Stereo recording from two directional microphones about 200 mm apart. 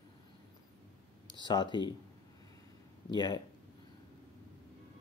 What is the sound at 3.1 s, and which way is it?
Speech, 20° left (ahead or behind).